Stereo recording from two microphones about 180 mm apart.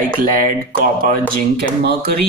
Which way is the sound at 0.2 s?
50° right (ahead or behind).